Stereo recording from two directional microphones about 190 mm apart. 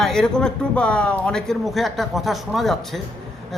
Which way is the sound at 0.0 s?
5° left (ahead or behind).